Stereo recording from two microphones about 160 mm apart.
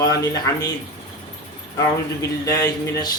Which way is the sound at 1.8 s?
20° left (ahead or behind).